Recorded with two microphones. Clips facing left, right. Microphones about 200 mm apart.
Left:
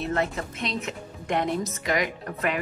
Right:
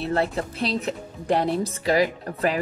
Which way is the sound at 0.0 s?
35° right (ahead or behind).